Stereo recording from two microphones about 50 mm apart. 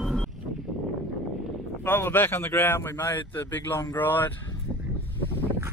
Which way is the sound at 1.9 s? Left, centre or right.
Left.